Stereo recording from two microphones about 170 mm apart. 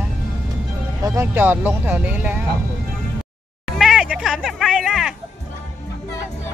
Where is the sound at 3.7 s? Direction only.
Centre (ahead or behind).